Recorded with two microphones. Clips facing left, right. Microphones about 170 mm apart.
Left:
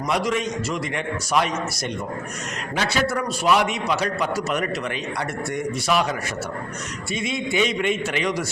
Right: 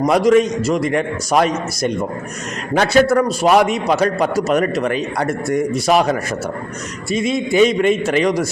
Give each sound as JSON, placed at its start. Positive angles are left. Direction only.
{"t": 0.0, "sound": "a man's voice", "side_deg": -40}